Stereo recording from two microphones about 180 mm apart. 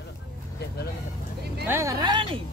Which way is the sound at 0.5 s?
65° left (ahead or behind).